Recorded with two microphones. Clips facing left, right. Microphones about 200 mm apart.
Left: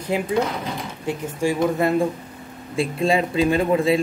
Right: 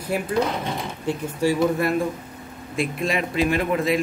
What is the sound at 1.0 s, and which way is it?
Speech, 15° left (ahead or behind).